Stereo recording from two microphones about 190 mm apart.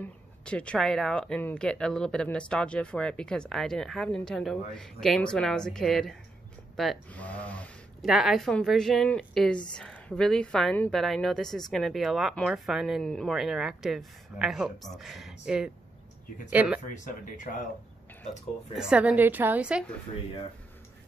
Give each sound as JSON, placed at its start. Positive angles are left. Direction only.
{"t": 0.0, "sound": "a woman's voice", "side_deg": 5}
{"t": 16.8, "sound": "speech", "side_deg": 40}
{"t": 18.8, "sound": "a woman's voice", "side_deg": -5}